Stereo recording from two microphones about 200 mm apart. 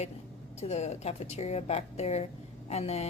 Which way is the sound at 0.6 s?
35° left (ahead or behind).